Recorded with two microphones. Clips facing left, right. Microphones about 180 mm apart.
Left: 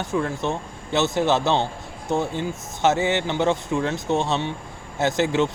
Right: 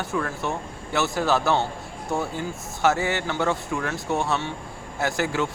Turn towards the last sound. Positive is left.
turn(degrees=20)  # may be behind; listen again after turning